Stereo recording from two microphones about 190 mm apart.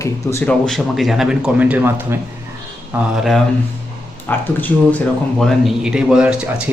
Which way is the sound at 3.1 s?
Centre (ahead or behind).